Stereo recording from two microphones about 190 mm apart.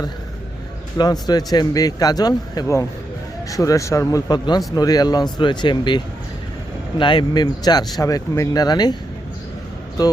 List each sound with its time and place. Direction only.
0.9 s speech: 20° left (ahead or behind)
7.0 s speech: 25° left (ahead or behind)